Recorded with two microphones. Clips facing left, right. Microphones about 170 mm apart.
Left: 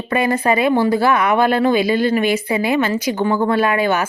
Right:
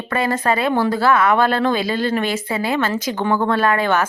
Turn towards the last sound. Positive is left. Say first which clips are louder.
# left 1 dB
turn(degrees=10)  # may be behind; listen again after turning